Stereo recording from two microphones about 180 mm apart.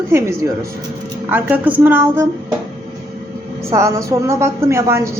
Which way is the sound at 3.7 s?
15° right (ahead or behind).